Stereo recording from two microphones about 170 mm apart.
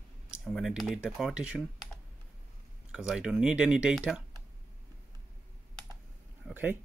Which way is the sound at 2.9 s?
5° right (ahead or behind).